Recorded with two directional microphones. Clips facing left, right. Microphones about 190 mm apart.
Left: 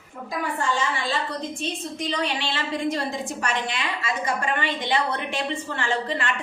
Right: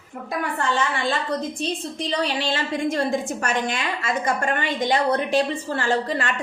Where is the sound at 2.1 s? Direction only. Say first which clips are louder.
Right 5 dB; 40° right (ahead or behind).